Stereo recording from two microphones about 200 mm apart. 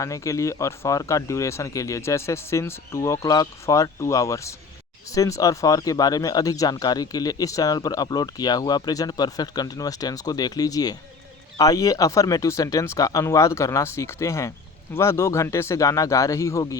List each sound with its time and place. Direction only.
0.0 s speech: 15° left (ahead or behind)